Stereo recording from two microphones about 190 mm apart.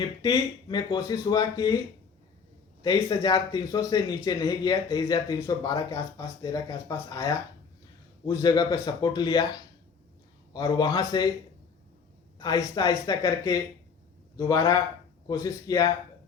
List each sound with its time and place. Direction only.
0.2 s speech: 20° left (ahead or behind)
2.8 s speech: 20° left (ahead or behind)
12.4 s speech: 20° left (ahead or behind)